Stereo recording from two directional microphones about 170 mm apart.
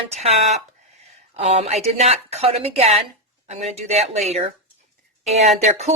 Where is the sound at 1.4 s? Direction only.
35° right (ahead or behind).